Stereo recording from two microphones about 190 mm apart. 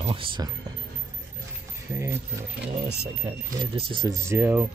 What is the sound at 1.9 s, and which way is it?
Speech, 15° right (ahead or behind).